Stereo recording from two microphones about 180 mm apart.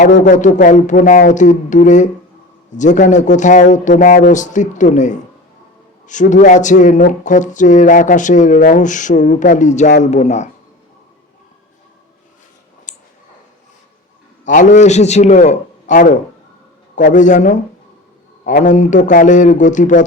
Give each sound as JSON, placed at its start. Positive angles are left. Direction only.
{"t": 0.0, "sound": "a man's voice", "side_deg": 45}
{"t": 12.9, "sound": "a sound", "side_deg": 45}
{"t": 14.4, "sound": "a man's voice", "side_deg": 45}